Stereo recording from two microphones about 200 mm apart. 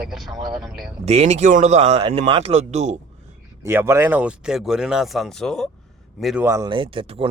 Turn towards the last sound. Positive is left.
turn(degrees=-30)  # may be behind; listen again after turning